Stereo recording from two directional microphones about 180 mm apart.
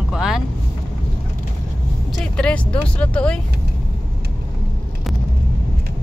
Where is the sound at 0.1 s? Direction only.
5° right (ahead or behind).